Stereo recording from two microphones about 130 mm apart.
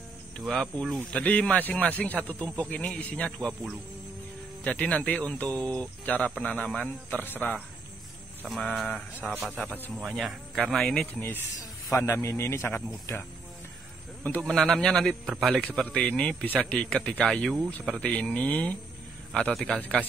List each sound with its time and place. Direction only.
0.4 s speech: centre (ahead or behind)
8.5 s speech: centre (ahead or behind)
11.9 s speech: 20° left (ahead or behind)
14.4 s speech: 5° left (ahead or behind)